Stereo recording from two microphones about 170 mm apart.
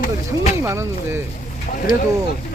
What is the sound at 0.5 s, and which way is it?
Speech, 15° right (ahead or behind).